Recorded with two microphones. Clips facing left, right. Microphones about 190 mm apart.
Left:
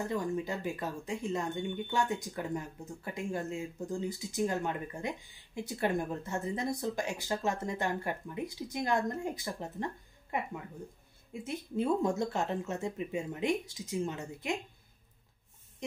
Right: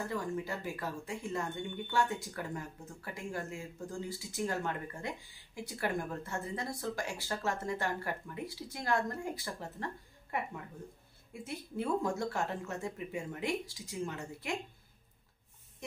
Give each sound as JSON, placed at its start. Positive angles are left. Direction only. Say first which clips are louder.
{"t": 0.1, "sound": "speech", "louder": "left 3 dB", "side_deg": 20}